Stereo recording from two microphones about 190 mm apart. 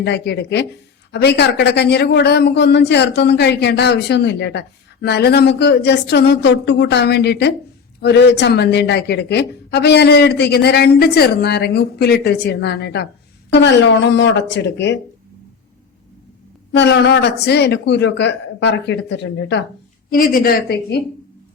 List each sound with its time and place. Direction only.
0.0 s speech: 60° left (ahead or behind)
16.7 s speech: 65° left (ahead or behind)
20.1 s speech: 50° left (ahead or behind)